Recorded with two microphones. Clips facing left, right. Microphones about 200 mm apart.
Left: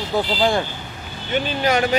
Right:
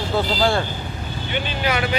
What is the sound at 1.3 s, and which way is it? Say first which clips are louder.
Speech: left 4 dB; 40° left (ahead or behind).